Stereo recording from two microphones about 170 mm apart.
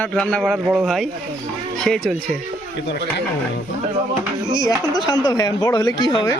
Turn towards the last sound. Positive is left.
turn(degrees=25)  # may be behind; listen again after turning